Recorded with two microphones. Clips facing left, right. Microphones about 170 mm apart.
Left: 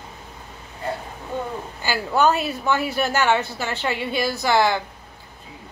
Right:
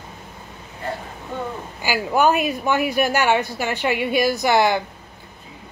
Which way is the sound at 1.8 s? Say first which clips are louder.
Right 1 dB; 15° right (ahead or behind).